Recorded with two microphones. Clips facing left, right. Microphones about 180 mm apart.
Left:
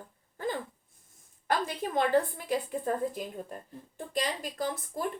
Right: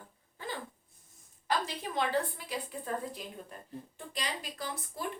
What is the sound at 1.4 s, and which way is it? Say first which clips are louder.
A woman's voice: left 3 dB; 50° left (ahead or behind).